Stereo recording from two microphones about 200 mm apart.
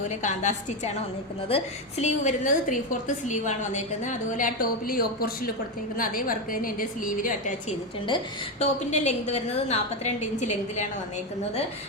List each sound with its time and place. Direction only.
0.2 s a woman's voice: 35° left (ahead or behind)
8.0 s a woman's voice: 30° left (ahead or behind)